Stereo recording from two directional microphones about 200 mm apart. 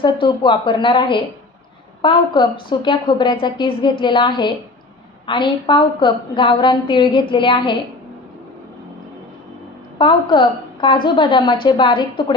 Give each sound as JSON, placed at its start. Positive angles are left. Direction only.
{"t": 0.0, "sound": "a woman's voice", "side_deg": 25}
{"t": 10.0, "sound": "a woman's voice", "side_deg": 25}